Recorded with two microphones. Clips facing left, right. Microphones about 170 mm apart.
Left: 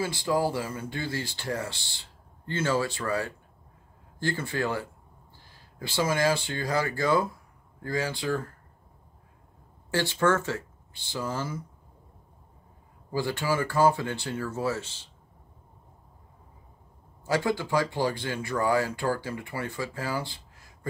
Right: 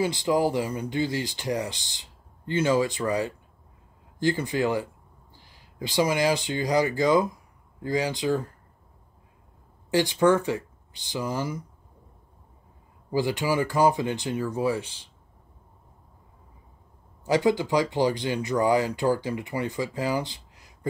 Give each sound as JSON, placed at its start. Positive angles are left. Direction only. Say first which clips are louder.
{"t": 0.0, "sound": "speech", "louder": "right 3 dB", "side_deg": -20}
{"t": 9.8, "sound": "speech", "louder": "right 4 dB", "side_deg": -15}
{"t": 13.1, "sound": "speech", "louder": "right 3 dB", "side_deg": -15}
{"t": 17.2, "sound": "speech", "louder": "right 5 dB", "side_deg": -15}